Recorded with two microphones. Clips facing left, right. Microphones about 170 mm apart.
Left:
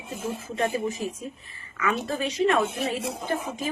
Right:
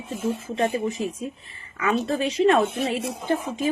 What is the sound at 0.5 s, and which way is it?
A woman's voice, 30° right (ahead or behind).